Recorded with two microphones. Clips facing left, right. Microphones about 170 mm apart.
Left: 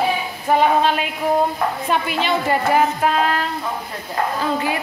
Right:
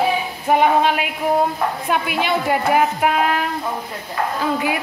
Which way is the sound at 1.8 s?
10° right (ahead or behind).